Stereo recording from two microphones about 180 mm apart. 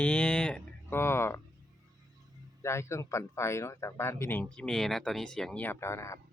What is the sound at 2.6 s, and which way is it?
Speech, 15° left (ahead or behind).